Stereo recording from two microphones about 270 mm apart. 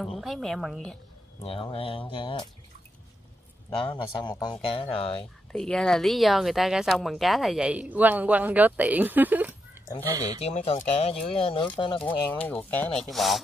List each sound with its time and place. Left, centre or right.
0.0 s speech: centre
1.4 s speech: left
3.7 s speech: centre
5.5 s speech: centre
10.4 s speech: left
12.0 s speech: centre